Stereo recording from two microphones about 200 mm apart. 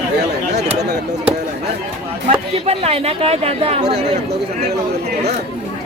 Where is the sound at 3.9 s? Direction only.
55° right (ahead or behind).